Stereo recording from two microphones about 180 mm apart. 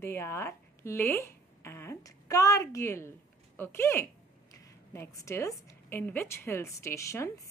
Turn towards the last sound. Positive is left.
turn(degrees=15)  # may be behind; listen again after turning